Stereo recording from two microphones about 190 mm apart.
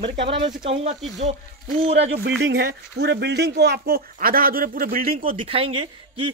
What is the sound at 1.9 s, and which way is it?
Speech, 65° right (ahead or behind).